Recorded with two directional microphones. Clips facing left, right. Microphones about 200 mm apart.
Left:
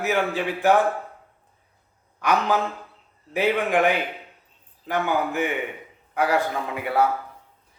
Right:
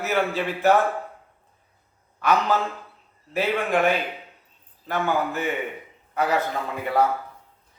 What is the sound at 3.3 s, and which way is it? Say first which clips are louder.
A man's voice: left 2 dB; 15° left (ahead or behind).